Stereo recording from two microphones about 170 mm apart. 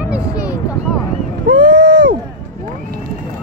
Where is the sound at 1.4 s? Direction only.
90° right.